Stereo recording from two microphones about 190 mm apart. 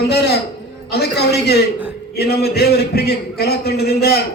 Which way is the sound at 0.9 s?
55° left (ahead or behind).